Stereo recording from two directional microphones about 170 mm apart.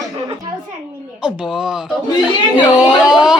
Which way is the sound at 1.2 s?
5° right (ahead or behind).